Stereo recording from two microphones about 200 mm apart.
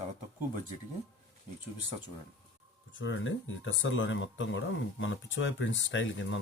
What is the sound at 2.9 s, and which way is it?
Speech, 70° left (ahead or behind).